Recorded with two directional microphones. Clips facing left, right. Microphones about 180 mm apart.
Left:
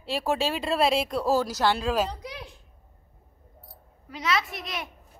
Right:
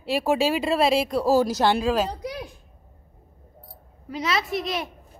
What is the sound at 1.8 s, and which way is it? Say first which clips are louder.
Speech: right 3 dB; centre (ahead or behind).